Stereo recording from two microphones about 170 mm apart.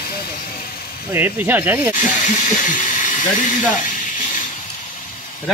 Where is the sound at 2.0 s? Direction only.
45° left (ahead or behind).